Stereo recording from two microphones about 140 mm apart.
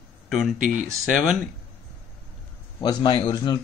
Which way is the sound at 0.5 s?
65° right (ahead or behind).